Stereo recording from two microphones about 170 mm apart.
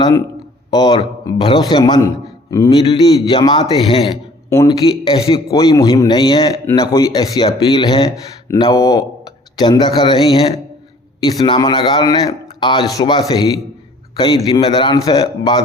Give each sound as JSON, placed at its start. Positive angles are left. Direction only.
{"t": 0.7, "sound": "speech", "side_deg": 25}